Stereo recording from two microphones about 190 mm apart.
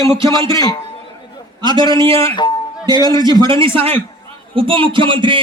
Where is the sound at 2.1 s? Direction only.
20° left (ahead or behind).